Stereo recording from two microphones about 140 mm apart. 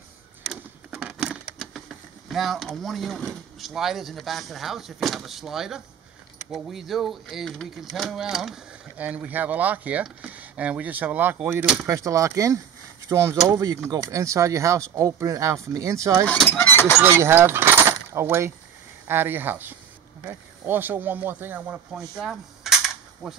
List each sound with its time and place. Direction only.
0.5 s a sound: 5° right (ahead or behind)
2.2 s speech: centre (ahead or behind)
11.9 s speech: 20° right (ahead or behind)
16.3 s fowl: 10° left (ahead or behind)
17.0 s speech: 15° right (ahead or behind)